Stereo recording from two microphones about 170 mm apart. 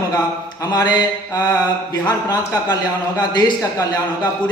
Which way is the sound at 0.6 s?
25° left (ahead or behind).